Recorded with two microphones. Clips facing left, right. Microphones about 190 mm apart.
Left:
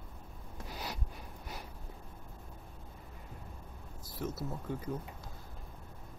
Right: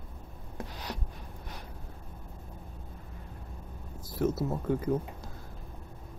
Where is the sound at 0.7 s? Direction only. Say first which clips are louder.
Left 1 dB; 5° left (ahead or behind).